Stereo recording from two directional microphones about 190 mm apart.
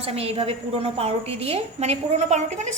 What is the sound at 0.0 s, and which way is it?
A woman's voice, 30° right (ahead or behind).